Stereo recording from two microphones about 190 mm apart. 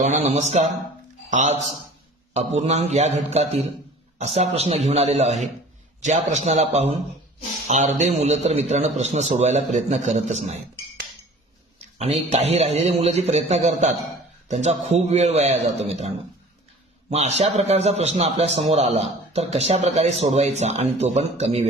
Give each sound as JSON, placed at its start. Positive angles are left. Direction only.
{"t": 0.0, "sound": "a man's voice", "side_deg": -40}
{"t": 11.9, "sound": "a man's voice", "side_deg": -35}
{"t": 17.1, "sound": "a man's voice", "side_deg": -35}